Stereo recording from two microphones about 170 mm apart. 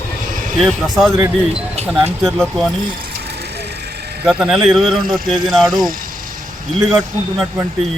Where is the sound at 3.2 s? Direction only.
70° right (ahead or behind).